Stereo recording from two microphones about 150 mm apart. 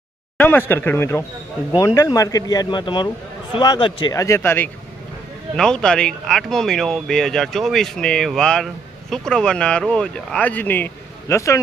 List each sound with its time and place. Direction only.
0.4 s speech: 10° left (ahead or behind)
5.6 s speech: 5° left (ahead or behind)